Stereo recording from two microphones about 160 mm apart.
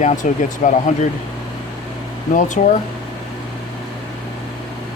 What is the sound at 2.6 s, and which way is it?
Speech, 55° left (ahead or behind).